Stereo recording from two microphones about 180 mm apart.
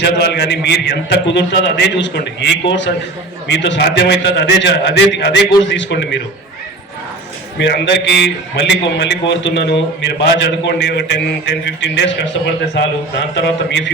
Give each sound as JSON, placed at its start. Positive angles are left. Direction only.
{"t": 0.0, "sound": "a man's voice", "side_deg": 70}
{"t": 7.6, "sound": "a man's voice", "side_deg": 75}
{"t": 11.6, "sound": "a man's voice", "side_deg": 85}
{"t": 13.3, "sound": "a man's voice", "side_deg": 80}